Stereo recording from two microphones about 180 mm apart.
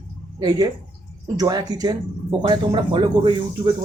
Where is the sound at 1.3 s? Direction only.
20° right (ahead or behind).